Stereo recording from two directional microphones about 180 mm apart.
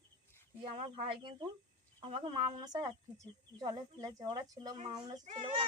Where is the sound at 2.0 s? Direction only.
30° right (ahead or behind).